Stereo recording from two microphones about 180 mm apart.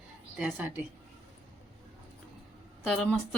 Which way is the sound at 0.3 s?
5° right (ahead or behind).